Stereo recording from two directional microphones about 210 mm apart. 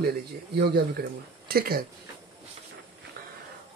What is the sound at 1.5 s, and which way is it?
Speech, 45° right (ahead or behind).